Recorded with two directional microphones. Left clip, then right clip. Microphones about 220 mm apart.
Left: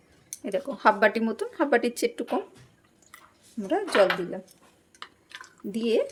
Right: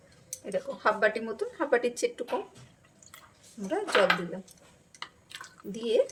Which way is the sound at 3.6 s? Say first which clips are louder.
Left 6 dB; 35° left (ahead or behind).